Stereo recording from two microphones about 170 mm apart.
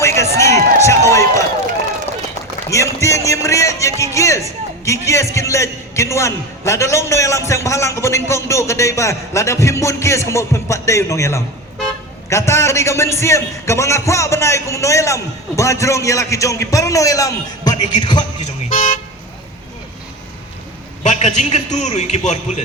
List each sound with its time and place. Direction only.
0.0 s run: 15° left (ahead or behind)
2.6 s a man's voice: 20° left (ahead or behind)
18.7 s a man's voice: 50° left (ahead or behind)
21.0 s a man's voice: 40° left (ahead or behind)